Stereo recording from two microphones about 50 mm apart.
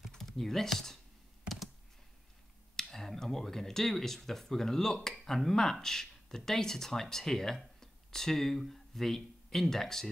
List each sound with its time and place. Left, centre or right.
0.1 s speech: centre
2.7 s speech: centre